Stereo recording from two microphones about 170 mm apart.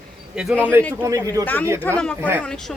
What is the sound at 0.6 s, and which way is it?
Speech, 15° right (ahead or behind).